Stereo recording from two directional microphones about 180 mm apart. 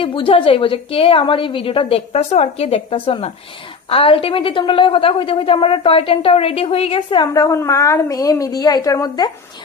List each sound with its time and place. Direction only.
0.0 s a woman's voice: 30° left (ahead or behind)